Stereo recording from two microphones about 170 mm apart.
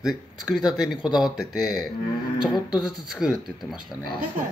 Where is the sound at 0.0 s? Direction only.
5° right (ahead or behind).